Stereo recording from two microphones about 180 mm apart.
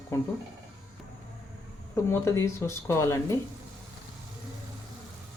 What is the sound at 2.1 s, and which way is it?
Speech, 15° left (ahead or behind).